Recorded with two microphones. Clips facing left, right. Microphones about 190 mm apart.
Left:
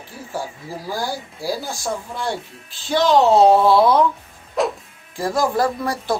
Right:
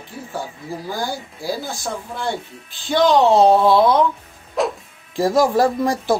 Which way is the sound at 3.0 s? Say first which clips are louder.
Even; 5° left (ahead or behind).